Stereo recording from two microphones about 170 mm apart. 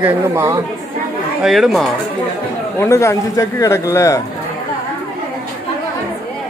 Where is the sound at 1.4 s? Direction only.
Centre (ahead or behind).